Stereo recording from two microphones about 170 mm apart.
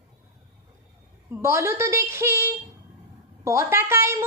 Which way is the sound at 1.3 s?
15° right (ahead or behind).